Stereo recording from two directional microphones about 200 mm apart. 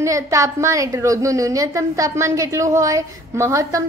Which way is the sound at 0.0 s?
15° right (ahead or behind).